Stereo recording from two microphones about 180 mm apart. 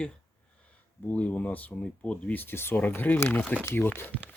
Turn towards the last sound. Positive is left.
turn(degrees=10)  # may be behind; listen again after turning